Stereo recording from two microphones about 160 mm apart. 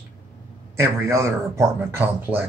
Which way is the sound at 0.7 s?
15° right (ahead or behind).